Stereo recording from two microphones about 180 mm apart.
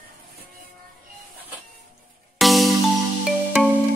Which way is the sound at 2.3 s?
Centre (ahead or behind).